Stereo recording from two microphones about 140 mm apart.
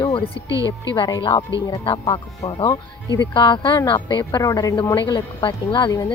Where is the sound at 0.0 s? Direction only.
40° left (ahead or behind).